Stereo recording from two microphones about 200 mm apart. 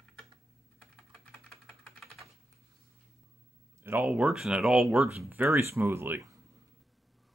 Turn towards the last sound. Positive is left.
turn(degrees=-15)  # may be behind; listen again after turning